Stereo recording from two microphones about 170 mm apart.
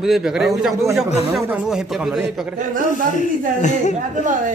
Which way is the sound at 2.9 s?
45° left (ahead or behind).